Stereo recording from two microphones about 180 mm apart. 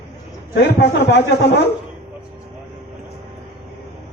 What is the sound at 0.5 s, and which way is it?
A man's voice, 70° left (ahead or behind).